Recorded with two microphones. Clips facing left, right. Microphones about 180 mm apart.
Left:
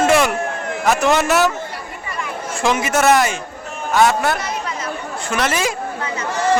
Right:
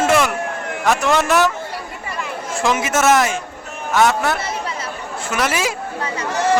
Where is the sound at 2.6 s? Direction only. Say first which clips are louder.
Left 1 dB; centre (ahead or behind).